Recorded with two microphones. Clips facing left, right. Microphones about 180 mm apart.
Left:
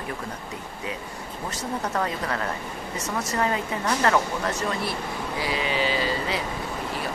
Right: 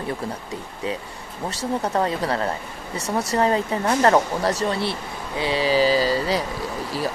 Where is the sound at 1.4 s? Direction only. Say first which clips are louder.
Right 5 dB; 30° right (ahead or behind).